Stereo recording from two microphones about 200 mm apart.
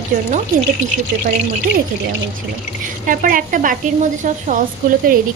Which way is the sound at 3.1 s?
45° right (ahead or behind).